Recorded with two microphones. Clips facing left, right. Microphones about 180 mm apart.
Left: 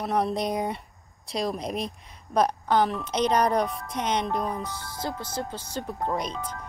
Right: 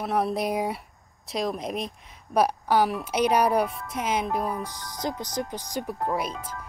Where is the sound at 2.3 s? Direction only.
10° right (ahead or behind).